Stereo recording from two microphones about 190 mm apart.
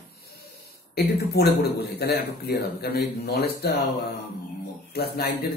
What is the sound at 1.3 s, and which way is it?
A man's voice, 55° left (ahead or behind).